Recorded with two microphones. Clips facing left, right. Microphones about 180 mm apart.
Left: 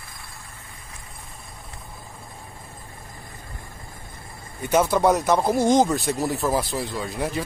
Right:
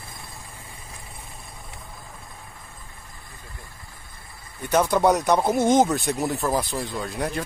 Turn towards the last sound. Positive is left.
turn(degrees=0)  # may be behind; listen again after turning